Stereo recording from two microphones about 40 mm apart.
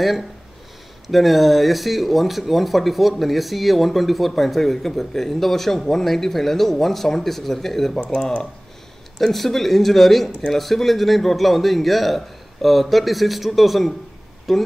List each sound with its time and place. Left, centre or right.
1.0 s speech: centre
8.1 s speech: centre
9.2 s speech: centre